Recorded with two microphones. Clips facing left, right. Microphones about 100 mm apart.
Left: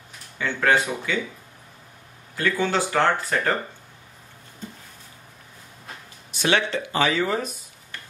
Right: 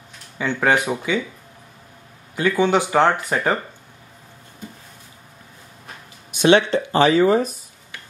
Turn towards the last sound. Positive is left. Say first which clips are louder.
# right 8 dB
turn(degrees=-35)  # may be behind; listen again after turning